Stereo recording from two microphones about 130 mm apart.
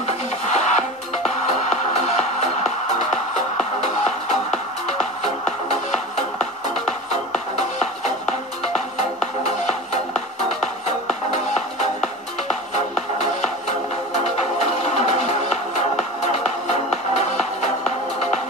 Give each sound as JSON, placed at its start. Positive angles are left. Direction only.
{"t": 0.0, "sound": "music", "side_deg": 65}
{"t": 7.5, "sound": "music", "side_deg": 55}
{"t": 12.7, "sound": "music", "side_deg": 60}